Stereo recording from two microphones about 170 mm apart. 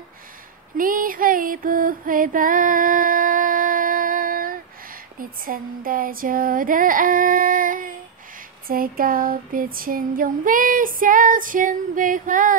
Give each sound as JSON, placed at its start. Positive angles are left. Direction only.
{"t": 0.7, "sound": "music", "side_deg": -55}
{"t": 8.6, "sound": "female singing", "side_deg": -60}